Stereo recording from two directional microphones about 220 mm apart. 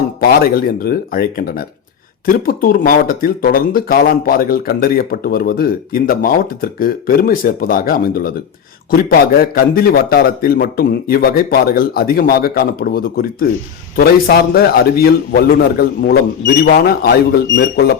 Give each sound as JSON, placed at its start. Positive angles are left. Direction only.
{"t": 0.2, "sound": "a man's voice", "side_deg": 45}
{"t": 9.4, "sound": "a man's voice", "side_deg": 45}